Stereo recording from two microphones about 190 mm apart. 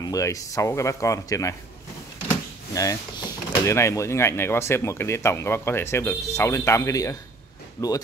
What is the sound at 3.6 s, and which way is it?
Speech, 15° left (ahead or behind).